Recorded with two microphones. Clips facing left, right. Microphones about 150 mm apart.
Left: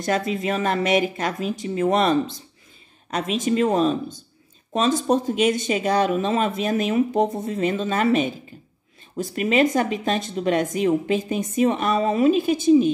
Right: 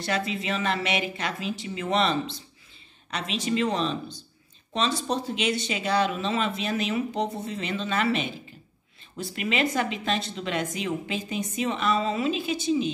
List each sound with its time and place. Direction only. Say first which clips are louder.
0.0 s a woman's voice: left 6 dB; 45° left (ahead or behind)